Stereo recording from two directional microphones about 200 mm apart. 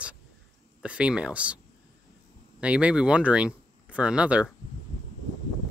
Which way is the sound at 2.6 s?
5° right (ahead or behind).